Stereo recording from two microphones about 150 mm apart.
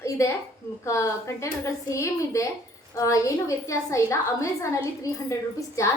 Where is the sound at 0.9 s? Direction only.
20° left (ahead or behind).